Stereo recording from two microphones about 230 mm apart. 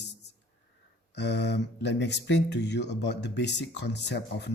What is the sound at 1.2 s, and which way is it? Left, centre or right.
Speech, left.